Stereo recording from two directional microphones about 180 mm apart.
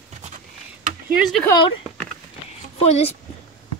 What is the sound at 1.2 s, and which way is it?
Speech, centre (ahead or behind).